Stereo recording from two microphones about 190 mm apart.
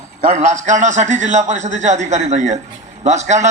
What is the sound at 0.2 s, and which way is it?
A man's voice, 40° right (ahead or behind).